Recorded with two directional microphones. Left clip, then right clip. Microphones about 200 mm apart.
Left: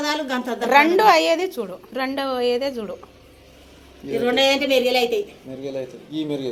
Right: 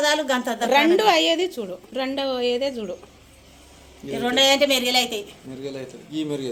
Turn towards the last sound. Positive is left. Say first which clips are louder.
# left 1 dB
turn(degrees=-35)  # may be behind; listen again after turning